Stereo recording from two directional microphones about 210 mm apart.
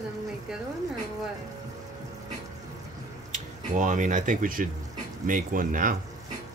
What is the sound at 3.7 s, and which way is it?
Speech, 40° right (ahead or behind).